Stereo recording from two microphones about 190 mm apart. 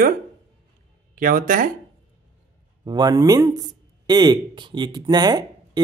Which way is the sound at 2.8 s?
20° right (ahead or behind).